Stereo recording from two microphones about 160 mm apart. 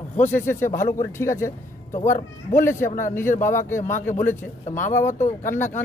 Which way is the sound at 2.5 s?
15° left (ahead or behind).